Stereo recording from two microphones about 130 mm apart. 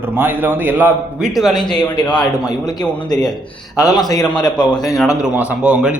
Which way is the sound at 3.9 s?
30° left (ahead or behind).